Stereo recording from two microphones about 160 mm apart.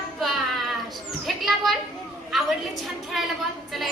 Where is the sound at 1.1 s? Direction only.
Centre (ahead or behind).